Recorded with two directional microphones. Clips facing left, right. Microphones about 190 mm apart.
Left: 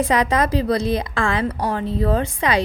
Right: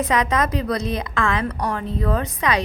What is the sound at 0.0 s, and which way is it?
A woman's voice, 30° left (ahead or behind).